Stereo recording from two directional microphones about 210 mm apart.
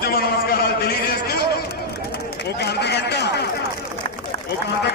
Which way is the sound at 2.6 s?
55° left (ahead or behind).